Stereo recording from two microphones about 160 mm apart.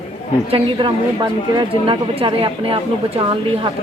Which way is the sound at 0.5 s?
30° right (ahead or behind).